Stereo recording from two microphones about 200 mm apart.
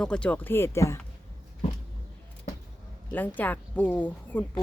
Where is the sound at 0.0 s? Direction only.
5° left (ahead or behind).